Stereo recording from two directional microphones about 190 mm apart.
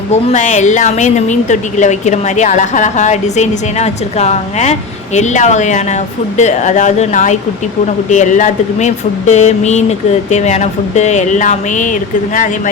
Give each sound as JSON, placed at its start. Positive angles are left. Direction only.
{"t": 0.1, "sound": "a woman's voice", "side_deg": 35}